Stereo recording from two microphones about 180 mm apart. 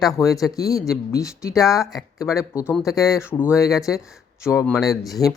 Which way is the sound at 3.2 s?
10° left (ahead or behind).